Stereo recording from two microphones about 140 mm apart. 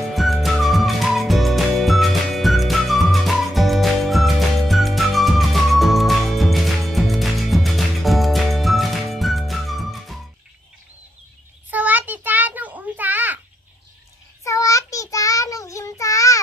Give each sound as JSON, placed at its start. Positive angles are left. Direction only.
{"t": 0.0, "sound": "music", "side_deg": 0}
{"t": 11.7, "sound": "a sound", "side_deg": -10}
{"t": 14.4, "sound": "child singing", "side_deg": 20}